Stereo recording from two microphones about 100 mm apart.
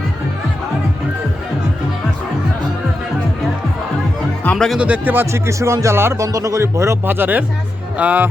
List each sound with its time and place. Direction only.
4.5 s speech: centre (ahead or behind)
4.8 s speech: 15° right (ahead or behind)